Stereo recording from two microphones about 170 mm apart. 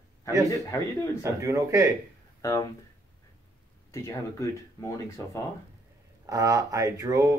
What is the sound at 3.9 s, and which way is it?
Speech, 15° left (ahead or behind).